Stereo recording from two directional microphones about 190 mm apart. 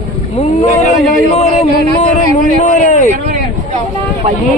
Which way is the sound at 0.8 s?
40° left (ahead or behind).